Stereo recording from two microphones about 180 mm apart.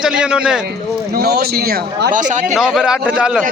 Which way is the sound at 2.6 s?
5° right (ahead or behind).